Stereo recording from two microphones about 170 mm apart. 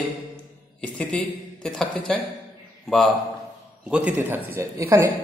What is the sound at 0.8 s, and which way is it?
A man's voice, 10° left (ahead or behind).